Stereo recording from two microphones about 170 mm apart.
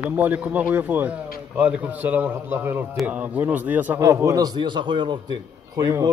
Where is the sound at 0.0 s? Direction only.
10° right (ahead or behind).